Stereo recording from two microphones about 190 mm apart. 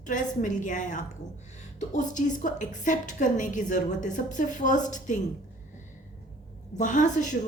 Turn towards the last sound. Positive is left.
turn(degrees=40)  # may be behind; listen again after turning